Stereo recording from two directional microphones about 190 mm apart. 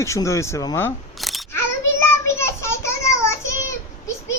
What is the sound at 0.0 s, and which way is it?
Speech, 15° left (ahead or behind).